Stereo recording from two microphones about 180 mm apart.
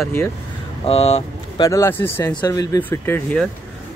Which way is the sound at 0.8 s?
35° left (ahead or behind).